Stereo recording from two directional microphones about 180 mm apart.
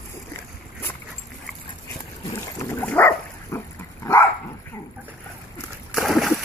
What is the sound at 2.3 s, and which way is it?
Dog, 15° left (ahead or behind).